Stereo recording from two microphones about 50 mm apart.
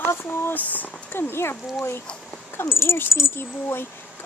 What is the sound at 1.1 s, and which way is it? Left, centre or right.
Speech, left.